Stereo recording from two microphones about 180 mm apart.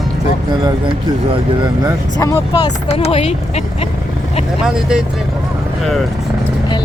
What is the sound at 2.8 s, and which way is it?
Speech, 35° left (ahead or behind).